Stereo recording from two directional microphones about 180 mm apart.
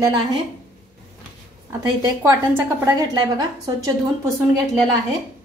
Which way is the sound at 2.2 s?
15° right (ahead or behind).